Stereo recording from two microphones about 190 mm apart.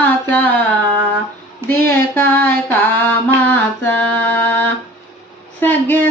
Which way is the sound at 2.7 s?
10° left (ahead or behind).